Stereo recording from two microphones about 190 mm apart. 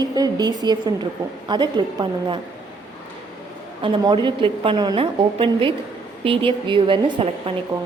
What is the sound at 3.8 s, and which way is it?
A woman's voice, 25° right (ahead or behind).